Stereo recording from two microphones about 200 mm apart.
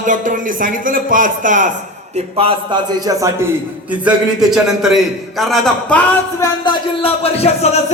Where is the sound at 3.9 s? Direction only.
5° right (ahead or behind).